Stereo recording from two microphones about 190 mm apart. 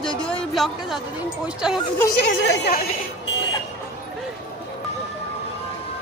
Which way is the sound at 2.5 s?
55° left (ahead or behind).